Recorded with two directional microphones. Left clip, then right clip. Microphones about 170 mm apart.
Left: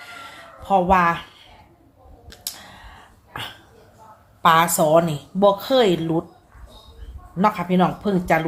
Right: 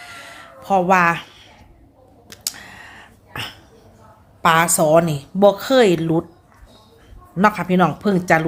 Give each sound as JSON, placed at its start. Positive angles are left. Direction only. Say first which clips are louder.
{"t": 0.0, "sound": "music", "louder": "right 1 dB", "side_deg": -25}
{"t": 2.3, "sound": "a sound", "louder": "right 5 dB", "side_deg": -35}
{"t": 4.4, "sound": "speech", "louder": "right 1 dB", "side_deg": -25}
{"t": 7.3, "sound": "speech", "louder": "right 3 dB", "side_deg": -40}